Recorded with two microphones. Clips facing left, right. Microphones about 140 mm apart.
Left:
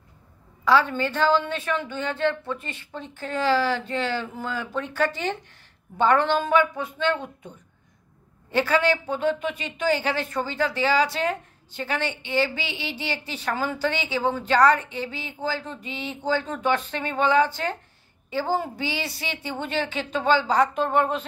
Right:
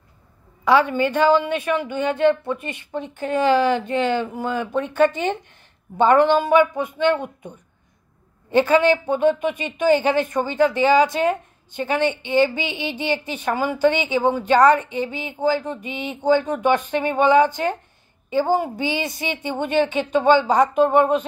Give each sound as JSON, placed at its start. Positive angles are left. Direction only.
{"t": 0.7, "sound": "a woman's voice", "side_deg": -15}